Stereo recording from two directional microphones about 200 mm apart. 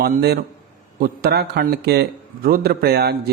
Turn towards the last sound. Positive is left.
turn(degrees=-50)  # may be behind; listen again after turning